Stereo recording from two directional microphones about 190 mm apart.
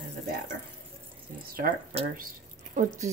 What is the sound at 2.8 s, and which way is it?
Speech, 40° right (ahead or behind).